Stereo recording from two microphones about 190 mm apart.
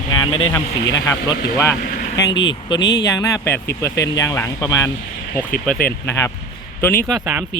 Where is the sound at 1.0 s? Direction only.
15° left (ahead or behind).